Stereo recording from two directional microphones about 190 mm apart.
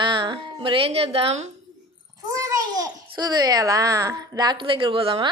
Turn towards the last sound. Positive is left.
turn(degrees=-25)  # may be behind; listen again after turning